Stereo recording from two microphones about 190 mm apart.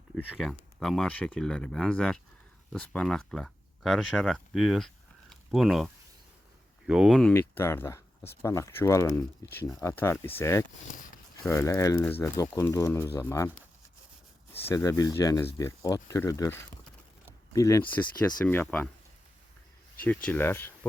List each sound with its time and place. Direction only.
0.2 s speech: 5° right (ahead or behind); by 13.5 s 15° left (ahead or behind)
14.7 s speech: 15° left (ahead or behind)
17.2 s a sound: 15° left (ahead or behind)
18.4 s speech: 10° left (ahead or behind)
20.1 s speech: 10° left (ahead or behind)